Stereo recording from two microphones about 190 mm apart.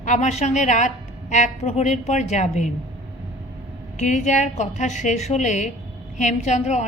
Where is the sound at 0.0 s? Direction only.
40° left (ahead or behind).